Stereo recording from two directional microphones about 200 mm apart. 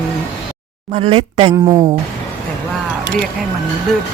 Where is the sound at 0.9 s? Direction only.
30° right (ahead or behind).